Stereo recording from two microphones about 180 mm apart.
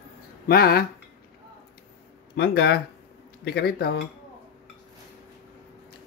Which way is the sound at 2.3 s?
65° left (ahead or behind).